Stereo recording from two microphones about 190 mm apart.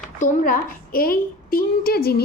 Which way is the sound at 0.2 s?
45° left (ahead or behind).